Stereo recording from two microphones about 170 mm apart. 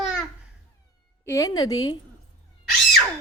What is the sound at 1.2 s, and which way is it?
Speech, 15° left (ahead or behind).